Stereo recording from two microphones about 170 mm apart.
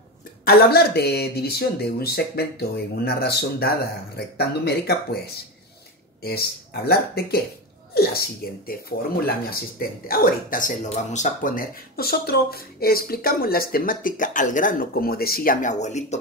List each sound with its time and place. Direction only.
0.5 s speech: 65° left (ahead or behind)
7.9 s a sound: 65° left (ahead or behind)
8.6 s speech: 60° left (ahead or behind); by 16.2 s 40° left (ahead or behind)